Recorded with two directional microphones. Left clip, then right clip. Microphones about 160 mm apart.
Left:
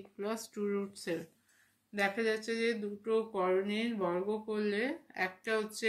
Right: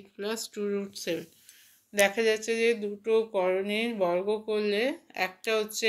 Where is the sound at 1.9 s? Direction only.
20° right (ahead or behind).